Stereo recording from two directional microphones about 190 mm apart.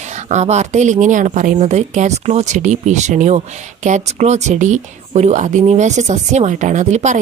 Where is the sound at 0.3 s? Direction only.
35° right (ahead or behind).